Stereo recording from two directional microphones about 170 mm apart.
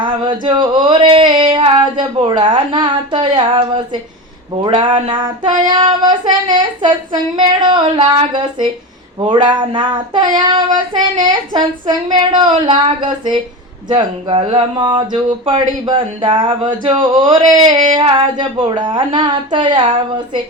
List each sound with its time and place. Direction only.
0.0 s child singing: 30° right (ahead or behind)